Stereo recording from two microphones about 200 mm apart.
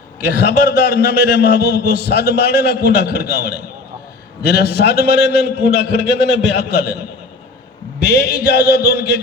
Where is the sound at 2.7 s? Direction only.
55° left (ahead or behind).